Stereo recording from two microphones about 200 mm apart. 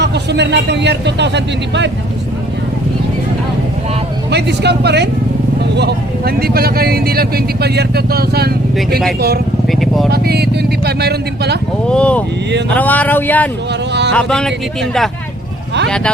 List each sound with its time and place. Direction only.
0.0 s speech: 60° right (ahead or behind)
4.3 s speech: 55° right (ahead or behind)
9.7 s vehicle: centre (ahead or behind)
10.1 s speech: 55° right (ahead or behind)
11.9 s a man's voice: 5° left (ahead or behind)